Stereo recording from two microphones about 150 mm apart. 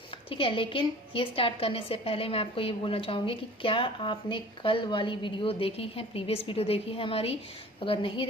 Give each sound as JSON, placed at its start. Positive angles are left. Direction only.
{"t": 0.3, "sound": "a woman's voice", "side_deg": 35}